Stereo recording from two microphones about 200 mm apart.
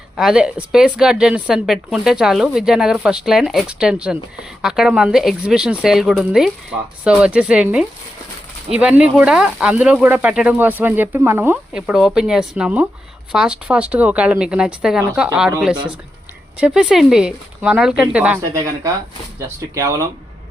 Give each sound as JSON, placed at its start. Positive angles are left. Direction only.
{"t": 0.2, "sound": "speech", "side_deg": -5}
{"t": 16.6, "sound": "speech", "side_deg": -5}